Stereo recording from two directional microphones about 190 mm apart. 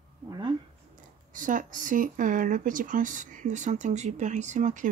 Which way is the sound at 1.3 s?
45° right (ahead or behind).